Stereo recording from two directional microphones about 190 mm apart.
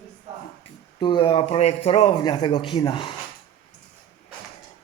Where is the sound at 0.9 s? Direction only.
25° left (ahead or behind).